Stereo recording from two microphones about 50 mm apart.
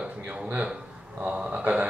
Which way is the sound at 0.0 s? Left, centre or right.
Right.